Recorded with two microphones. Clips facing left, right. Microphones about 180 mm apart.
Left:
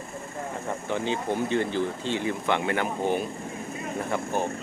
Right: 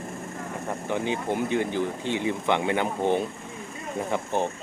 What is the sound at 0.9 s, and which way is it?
Speech, 15° right (ahead or behind).